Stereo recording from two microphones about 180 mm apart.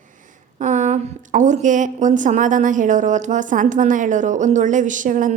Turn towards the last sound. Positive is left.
turn(degrees=-45)  # may be behind; listen again after turning